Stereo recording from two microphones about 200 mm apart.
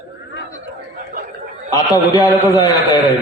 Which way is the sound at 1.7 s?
20° left (ahead or behind).